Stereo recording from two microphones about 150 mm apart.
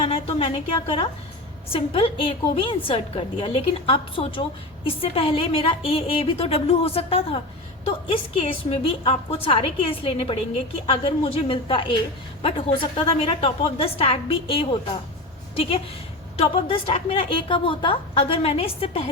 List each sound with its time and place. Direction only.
0.0 s a woman's voice: 40° left (ahead or behind)
16.4 s a woman's voice: 35° left (ahead or behind)